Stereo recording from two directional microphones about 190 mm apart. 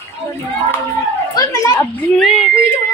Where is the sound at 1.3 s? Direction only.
20° left (ahead or behind).